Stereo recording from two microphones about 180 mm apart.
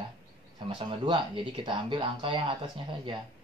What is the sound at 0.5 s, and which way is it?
Speech, 30° right (ahead or behind).